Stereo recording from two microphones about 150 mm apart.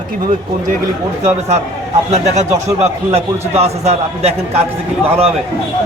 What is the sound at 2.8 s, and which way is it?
A man's voice, 45° right (ahead or behind).